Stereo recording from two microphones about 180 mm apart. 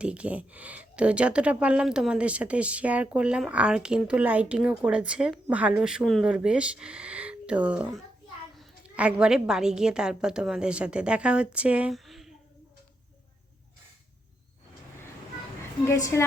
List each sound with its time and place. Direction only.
0.0 s a woman's voice: 5° right (ahead or behind)
15.8 s a woman's voice: 15° left (ahead or behind)